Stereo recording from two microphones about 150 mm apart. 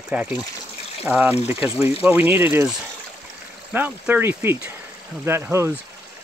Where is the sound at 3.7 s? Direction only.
10° right (ahead or behind).